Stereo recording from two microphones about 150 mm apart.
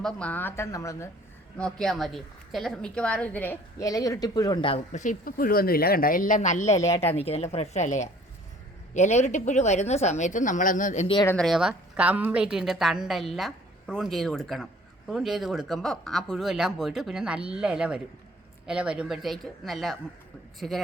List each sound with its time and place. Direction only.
0.0 s a woman's voice: 10° left (ahead or behind)
1.5 s a woman's voice: 5° left (ahead or behind); by 4.9 s 35° left (ahead or behind)
4.9 s speech: 65° left (ahead or behind)
11.3 s a woman's voice: 5° left (ahead or behind)